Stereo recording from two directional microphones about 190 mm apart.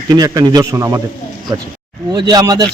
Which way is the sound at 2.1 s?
20° right (ahead or behind).